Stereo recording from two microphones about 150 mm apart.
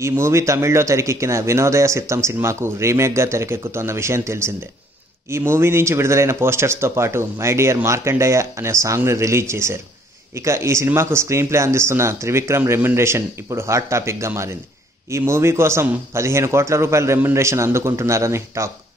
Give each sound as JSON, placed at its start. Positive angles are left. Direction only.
{"t": 0.0, "sound": "speech", "side_deg": -20}